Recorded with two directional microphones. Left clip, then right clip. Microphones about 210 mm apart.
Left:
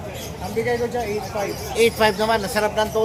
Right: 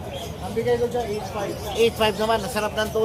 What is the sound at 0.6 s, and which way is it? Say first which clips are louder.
Speech: left 1 dB; 30° left (ahead or behind).